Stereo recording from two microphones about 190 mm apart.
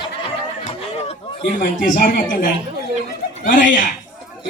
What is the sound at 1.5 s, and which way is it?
A man's voice, 45° left (ahead or behind).